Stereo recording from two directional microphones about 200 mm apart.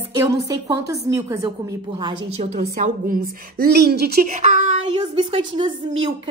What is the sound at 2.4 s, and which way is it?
A woman's voice, 35° right (ahead or behind).